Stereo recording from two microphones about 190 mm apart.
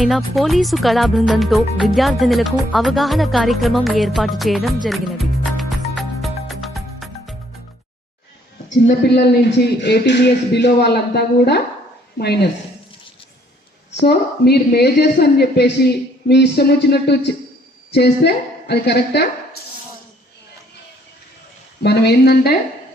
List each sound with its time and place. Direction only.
0.0 s speech: centre (ahead or behind)
8.9 s a woman's voice: 60° left (ahead or behind)
14.0 s a woman's voice: 60° left (ahead or behind)
21.8 s a woman's voice: 60° left (ahead or behind)